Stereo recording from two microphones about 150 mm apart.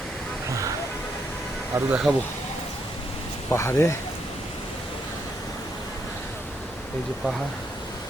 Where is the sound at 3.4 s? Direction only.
15° left (ahead or behind).